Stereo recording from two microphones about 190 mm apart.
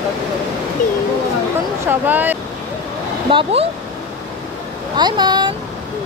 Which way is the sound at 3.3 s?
25° right (ahead or behind).